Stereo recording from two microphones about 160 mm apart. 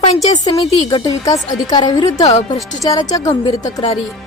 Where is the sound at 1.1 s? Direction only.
20° left (ahead or behind).